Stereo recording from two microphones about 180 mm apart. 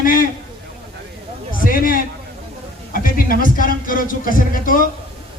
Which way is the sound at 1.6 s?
50° left (ahead or behind).